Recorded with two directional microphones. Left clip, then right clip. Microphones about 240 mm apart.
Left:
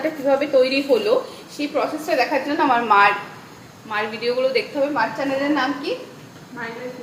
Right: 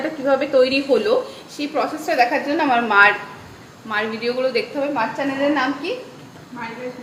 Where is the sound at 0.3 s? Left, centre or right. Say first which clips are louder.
Right 1 dB; centre.